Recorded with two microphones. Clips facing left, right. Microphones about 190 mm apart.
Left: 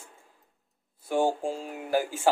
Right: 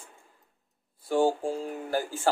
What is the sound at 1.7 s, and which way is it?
Speech, 10° left (ahead or behind).